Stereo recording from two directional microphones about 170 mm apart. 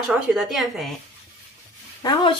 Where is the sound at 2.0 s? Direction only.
25° left (ahead or behind).